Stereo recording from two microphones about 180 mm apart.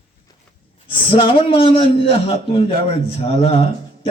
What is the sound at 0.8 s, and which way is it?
A man's voice, 30° left (ahead or behind).